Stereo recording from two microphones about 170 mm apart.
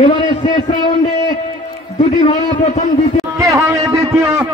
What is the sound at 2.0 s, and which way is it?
Speech, 40° left (ahead or behind).